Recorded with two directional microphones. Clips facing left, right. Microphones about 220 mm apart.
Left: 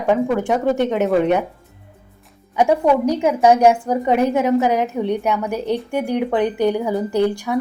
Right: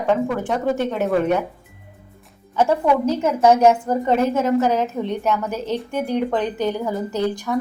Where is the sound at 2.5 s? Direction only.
15° left (ahead or behind).